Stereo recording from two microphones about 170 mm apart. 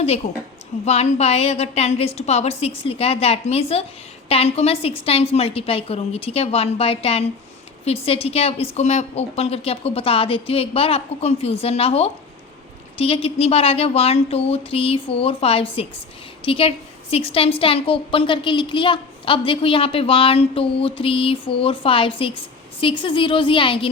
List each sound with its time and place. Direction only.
0.2 s a woman's voice: 40° left (ahead or behind)